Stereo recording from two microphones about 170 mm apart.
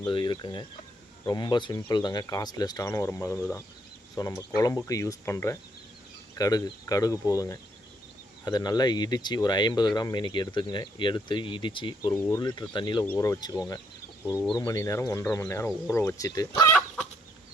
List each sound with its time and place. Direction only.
0.1 s speech: 30° left (ahead or behind)
12.1 s speech: 15° left (ahead or behind)
14.8 s speech: 20° left (ahead or behind)